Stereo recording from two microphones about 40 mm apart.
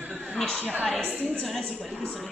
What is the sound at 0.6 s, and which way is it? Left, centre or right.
Speech, right.